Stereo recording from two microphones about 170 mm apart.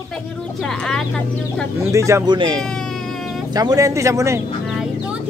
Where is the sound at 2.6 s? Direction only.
5° left (ahead or behind).